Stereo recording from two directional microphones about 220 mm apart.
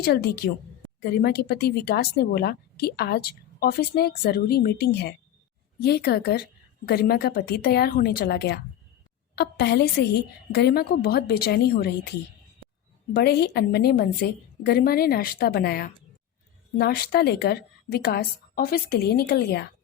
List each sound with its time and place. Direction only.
0.0 s a woman's voice: 45° left (ahead or behind)
13.1 s a woman's voice: 45° left (ahead or behind)